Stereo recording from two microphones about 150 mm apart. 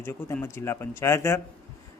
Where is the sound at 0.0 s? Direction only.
15° left (ahead or behind).